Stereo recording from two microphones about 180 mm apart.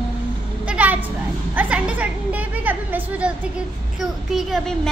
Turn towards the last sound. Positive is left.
turn(degrees=0)  # may be behind; listen again after turning